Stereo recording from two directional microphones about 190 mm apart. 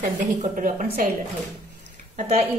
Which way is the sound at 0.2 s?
40° right (ahead or behind).